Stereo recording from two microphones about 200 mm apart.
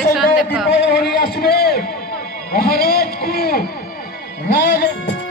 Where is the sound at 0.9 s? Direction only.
50° left (ahead or behind).